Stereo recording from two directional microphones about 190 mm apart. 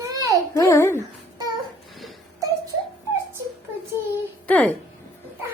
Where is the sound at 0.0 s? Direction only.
20° right (ahead or behind).